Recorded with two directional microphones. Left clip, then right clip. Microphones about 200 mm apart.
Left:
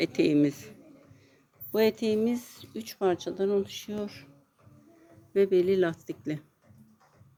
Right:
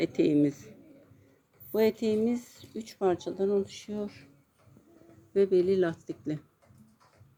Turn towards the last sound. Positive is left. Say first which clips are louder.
# left 1 dB
turn(degrees=0)  # may be behind; listen again after turning